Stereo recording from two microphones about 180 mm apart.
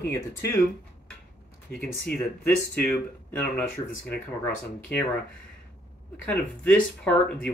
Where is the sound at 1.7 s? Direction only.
5° left (ahead or behind).